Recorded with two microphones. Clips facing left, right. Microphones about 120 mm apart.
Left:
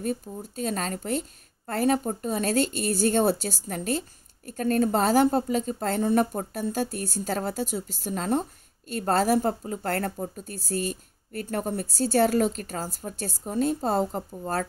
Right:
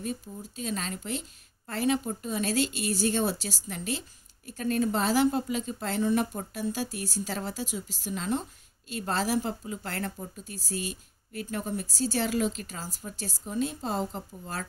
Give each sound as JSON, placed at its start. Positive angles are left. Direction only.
{"t": 0.0, "sound": "a woman's voice", "side_deg": 45}